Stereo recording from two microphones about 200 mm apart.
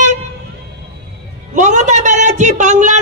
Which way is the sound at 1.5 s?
40° right (ahead or behind).